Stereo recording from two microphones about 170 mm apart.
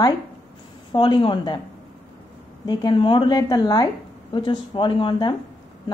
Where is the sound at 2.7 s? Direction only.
25° left (ahead or behind).